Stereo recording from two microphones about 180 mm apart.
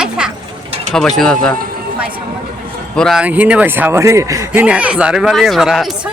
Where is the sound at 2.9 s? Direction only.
Centre (ahead or behind).